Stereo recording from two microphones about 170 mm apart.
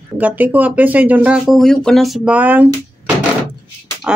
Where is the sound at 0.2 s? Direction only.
10° right (ahead or behind).